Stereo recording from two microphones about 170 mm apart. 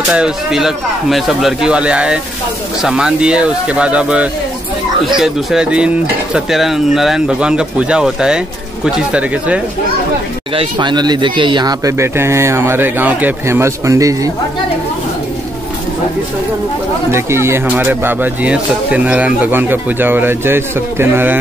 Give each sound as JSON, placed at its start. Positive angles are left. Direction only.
{"t": 0.1, "sound": "speech", "side_deg": -5}
{"t": 10.5, "sound": "speech", "side_deg": -30}
{"t": 17.1, "sound": "speech", "side_deg": -15}